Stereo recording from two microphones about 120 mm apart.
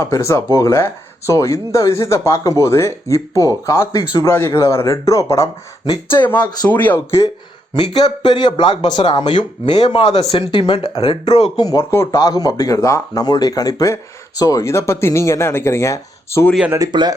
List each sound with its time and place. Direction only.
0.0 s speech: 25° left (ahead or behind)
4.3 s speech: 20° left (ahead or behind)
6.1 s speech: 15° left (ahead or behind)
7.8 s speech: 40° left (ahead or behind)
11.5 s speech: 30° left (ahead or behind)
16.7 s a man's voice: 35° right (ahead or behind)